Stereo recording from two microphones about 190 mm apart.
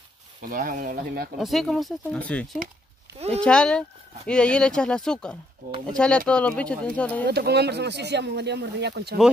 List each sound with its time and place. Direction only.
0.4 s speech: 45° right (ahead or behind)
1.4 s speech: centre (ahead or behind)
7.2 s speech: 60° right (ahead or behind)